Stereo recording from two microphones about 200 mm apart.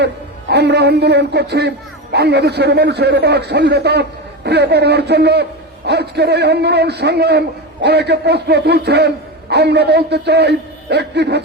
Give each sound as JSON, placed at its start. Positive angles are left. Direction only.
{"t": 0.5, "sound": "a man's voice", "side_deg": -55}